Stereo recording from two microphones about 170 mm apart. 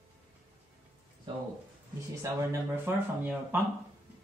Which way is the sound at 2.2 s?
15° right (ahead or behind).